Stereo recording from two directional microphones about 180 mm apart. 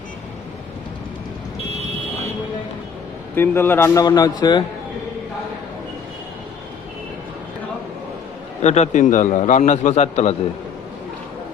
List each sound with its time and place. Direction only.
3.3 s a man's voice: 15° left (ahead or behind)
8.6 s a man's voice: 40° left (ahead or behind)